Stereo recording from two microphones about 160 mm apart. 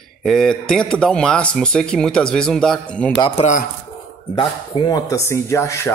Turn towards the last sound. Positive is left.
turn(degrees=15)  # may be behind; listen again after turning